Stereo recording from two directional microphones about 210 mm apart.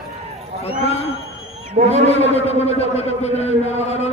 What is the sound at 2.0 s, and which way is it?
A man's voice, 30° left (ahead or behind).